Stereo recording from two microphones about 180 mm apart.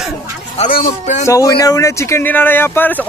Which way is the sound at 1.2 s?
20° left (ahead or behind).